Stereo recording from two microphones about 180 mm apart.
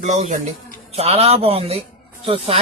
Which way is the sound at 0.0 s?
40° right (ahead or behind).